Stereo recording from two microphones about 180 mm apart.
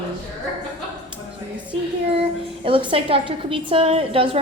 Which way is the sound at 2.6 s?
30° right (ahead or behind).